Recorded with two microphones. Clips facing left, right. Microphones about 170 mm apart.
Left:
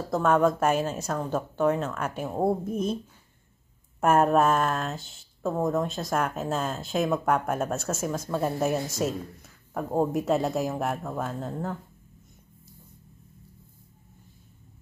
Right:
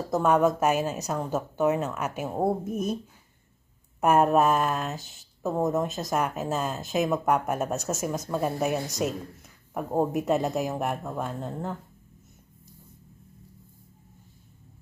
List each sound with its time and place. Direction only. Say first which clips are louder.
0.1 s speech: even; 5° right (ahead or behind)
0.9 s a woman's voice: even; 15° right (ahead or behind)
1.3 s a woman's voice: even; 5° right (ahead or behind)
4.0 s speech: even; centre (ahead or behind)